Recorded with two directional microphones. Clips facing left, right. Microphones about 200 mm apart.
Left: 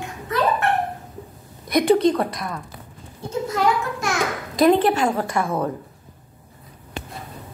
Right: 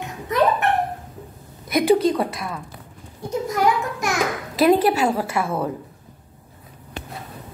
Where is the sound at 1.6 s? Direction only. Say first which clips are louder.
Left 1 dB; 5° right (ahead or behind).